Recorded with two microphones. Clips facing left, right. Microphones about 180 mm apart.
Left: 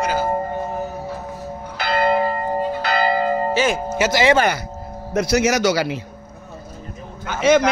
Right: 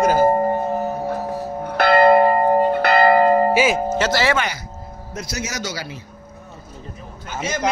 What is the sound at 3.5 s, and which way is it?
Speech, 10° right (ahead or behind).